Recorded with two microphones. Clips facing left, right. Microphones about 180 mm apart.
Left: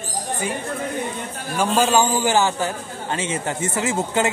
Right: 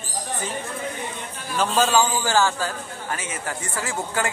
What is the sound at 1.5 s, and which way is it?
A man's voice, 15° left (ahead or behind).